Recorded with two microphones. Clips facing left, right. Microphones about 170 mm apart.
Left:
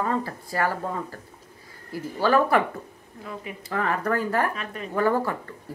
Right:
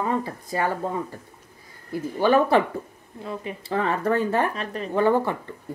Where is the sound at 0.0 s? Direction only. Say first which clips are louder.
Right 1 dB; 20° right (ahead or behind).